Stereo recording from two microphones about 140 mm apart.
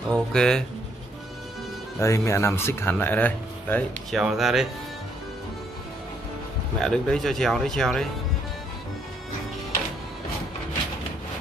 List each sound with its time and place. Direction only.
0.1 s speech: 5° left (ahead or behind)
2.0 s speech: 20° left (ahead or behind)
4.1 s speech: centre (ahead or behind)
6.8 s speech: 5° left (ahead or behind)